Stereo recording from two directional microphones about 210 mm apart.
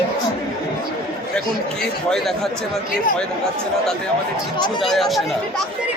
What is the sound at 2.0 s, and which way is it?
Speech, centre (ahead or behind).